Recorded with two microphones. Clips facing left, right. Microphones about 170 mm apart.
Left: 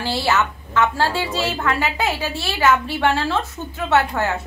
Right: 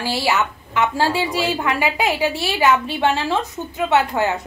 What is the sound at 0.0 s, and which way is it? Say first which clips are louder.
A woman's voice: even; 15° right (ahead or behind).